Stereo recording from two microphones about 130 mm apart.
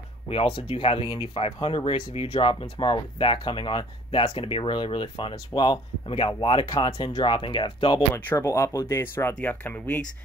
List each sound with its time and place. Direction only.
0.3 s speech: 45° left (ahead or behind)
6.6 s speech: 30° left (ahead or behind)
8.1 s speech: 20° left (ahead or behind)